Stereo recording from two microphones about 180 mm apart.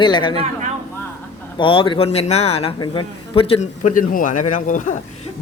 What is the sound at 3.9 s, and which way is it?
Speech, 50° left (ahead or behind).